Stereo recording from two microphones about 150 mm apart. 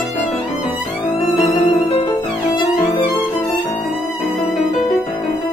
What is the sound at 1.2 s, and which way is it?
Violin, 45° left (ahead or behind).